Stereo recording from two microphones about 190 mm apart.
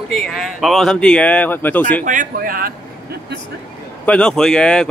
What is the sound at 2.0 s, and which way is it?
A man's voice, 45° right (ahead or behind).